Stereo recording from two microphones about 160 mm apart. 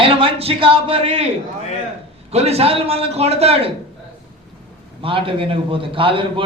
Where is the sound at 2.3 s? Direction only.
40° right (ahead or behind).